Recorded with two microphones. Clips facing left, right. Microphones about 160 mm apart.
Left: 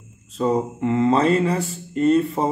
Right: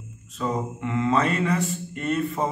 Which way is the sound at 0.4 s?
35° left (ahead or behind).